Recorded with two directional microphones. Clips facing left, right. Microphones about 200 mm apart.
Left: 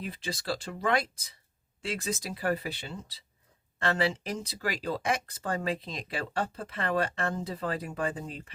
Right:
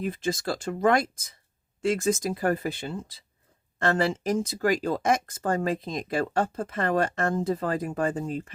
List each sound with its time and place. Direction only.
0.0 s speech: 45° right (ahead or behind)